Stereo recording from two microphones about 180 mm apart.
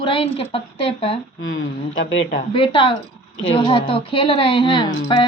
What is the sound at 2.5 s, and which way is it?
A woman's voice, 30° left (ahead or behind).